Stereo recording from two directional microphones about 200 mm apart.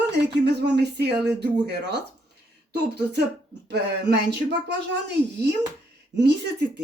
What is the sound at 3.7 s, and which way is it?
Speech, 60° right (ahead or behind).